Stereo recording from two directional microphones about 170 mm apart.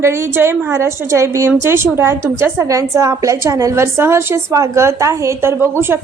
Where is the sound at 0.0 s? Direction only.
15° right (ahead or behind).